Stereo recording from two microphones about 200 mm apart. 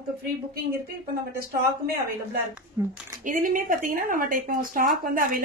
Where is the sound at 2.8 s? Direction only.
15° right (ahead or behind).